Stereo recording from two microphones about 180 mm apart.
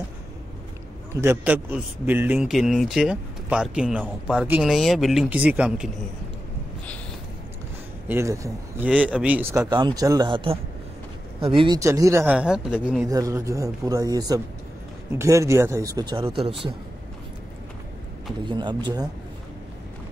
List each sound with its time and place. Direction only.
1.2 s a man's voice: 10° right (ahead or behind)
8.1 s a man's voice: 15° right (ahead or behind)
13.1 s a man's voice: 15° right (ahead or behind)
18.4 s a man's voice: 25° right (ahead or behind)